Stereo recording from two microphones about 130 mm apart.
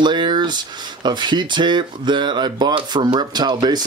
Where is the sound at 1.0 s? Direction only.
35° right (ahead or behind).